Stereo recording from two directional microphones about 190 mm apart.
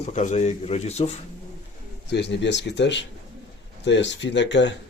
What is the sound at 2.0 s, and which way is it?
Speech, 65° left (ahead or behind).